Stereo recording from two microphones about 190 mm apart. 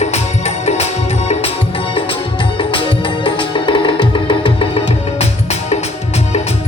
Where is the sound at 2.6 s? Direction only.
25° left (ahead or behind).